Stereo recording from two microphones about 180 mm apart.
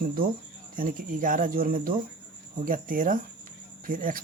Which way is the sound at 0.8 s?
50° right (ahead or behind).